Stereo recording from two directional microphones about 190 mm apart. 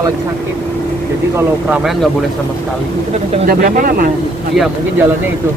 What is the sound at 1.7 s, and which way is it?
Speech, 5° right (ahead or behind).